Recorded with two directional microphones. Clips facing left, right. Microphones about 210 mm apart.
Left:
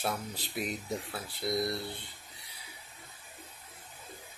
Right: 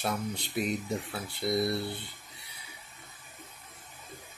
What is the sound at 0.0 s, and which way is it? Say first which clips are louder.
Speech: right 3 dB; 5° left (ahead or behind).